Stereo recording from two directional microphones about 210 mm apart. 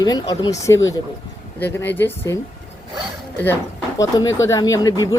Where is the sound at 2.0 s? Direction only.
10° left (ahead or behind).